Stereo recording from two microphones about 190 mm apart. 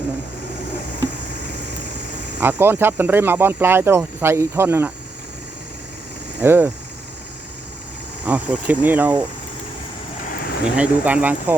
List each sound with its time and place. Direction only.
2.4 s speech: 10° right (ahead or behind)
6.4 s speech: 10° right (ahead or behind)
8.3 s speech: 10° right (ahead or behind)
10.2 s vehicle: 50° left (ahead or behind)
10.8 s speech: 10° right (ahead or behind)